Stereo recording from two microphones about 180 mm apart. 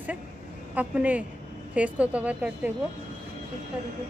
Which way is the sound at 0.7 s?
10° right (ahead or behind).